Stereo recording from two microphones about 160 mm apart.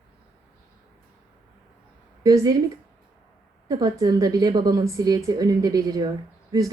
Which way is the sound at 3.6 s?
25° right (ahead or behind).